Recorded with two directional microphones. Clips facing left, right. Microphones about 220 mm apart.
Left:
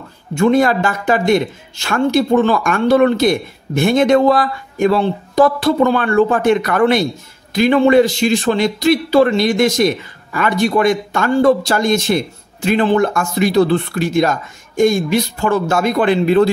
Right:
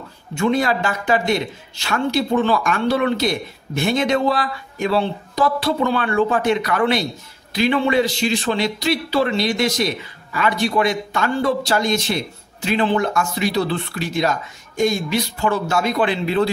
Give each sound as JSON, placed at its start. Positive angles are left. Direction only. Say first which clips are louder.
{"t": 0.4, "sound": "speech", "louder": "left 6 dB", "side_deg": 50}